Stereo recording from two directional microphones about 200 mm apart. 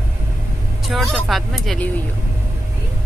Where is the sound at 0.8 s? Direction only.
Centre (ahead or behind).